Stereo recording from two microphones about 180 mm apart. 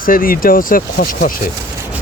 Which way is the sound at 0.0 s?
50° left (ahead or behind).